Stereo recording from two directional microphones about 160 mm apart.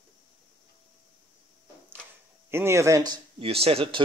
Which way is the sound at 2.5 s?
15° right (ahead or behind).